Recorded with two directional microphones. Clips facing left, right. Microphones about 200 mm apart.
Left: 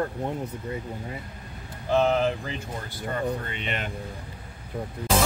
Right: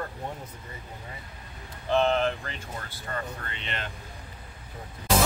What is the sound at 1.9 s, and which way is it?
Speech, 5° left (ahead or behind).